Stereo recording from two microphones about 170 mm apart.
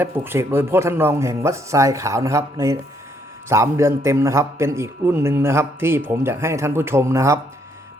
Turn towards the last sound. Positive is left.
turn(degrees=-15)  # may be behind; listen again after turning